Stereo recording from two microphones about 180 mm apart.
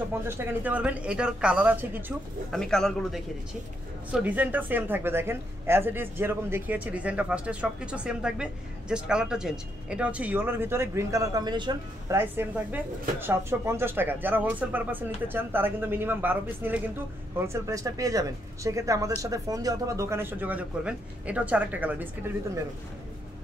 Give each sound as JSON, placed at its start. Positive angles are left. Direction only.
{"t": 0.3, "sound": "speech", "side_deg": -10}
{"t": 2.5, "sound": "a man's voice", "side_deg": 5}
{"t": 4.1, "sound": "speech", "side_deg": -10}
{"t": 12.2, "sound": "speech", "side_deg": -10}